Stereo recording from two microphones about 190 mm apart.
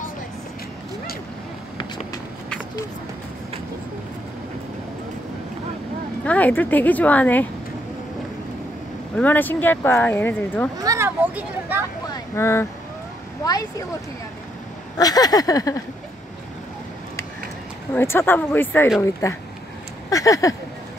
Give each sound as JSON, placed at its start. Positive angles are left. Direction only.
{"t": 6.2, "sound": "speech", "side_deg": 10}
{"t": 9.1, "sound": "speech", "side_deg": 10}
{"t": 10.8, "sound": "speech", "side_deg": -15}
{"t": 12.1, "sound": "a sound", "side_deg": 15}
{"t": 13.4, "sound": "speech", "side_deg": 20}
{"t": 15.0, "sound": "a sound", "side_deg": 20}
{"t": 17.9, "sound": "speech", "side_deg": 10}